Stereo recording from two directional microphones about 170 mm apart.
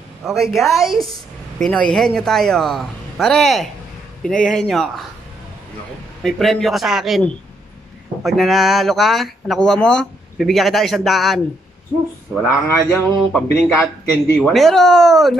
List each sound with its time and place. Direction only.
0.2 s speech: centre (ahead or behind)
6.2 s speech: centre (ahead or behind)
12.6 s speech: 15° left (ahead or behind)
14.3 s speech: centre (ahead or behind)